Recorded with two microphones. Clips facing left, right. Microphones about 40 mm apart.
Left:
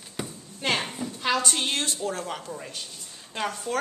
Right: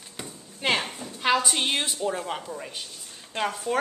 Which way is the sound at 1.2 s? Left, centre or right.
Centre.